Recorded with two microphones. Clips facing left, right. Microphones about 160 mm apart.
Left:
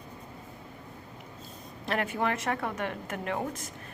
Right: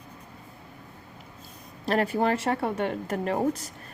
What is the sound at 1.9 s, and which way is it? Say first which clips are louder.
Speech: right 5 dB; 35° right (ahead or behind).